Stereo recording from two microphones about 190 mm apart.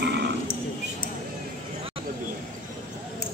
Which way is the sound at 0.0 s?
60° right (ahead or behind).